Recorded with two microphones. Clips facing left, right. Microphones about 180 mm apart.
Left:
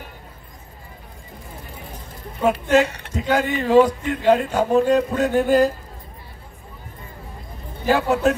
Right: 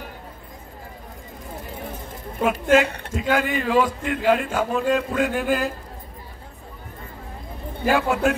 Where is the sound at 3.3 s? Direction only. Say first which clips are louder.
Left 2 dB; 40° left (ahead or behind).